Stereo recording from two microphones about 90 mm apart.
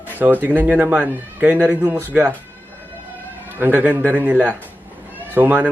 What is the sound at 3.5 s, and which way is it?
Speech, 20° right (ahead or behind).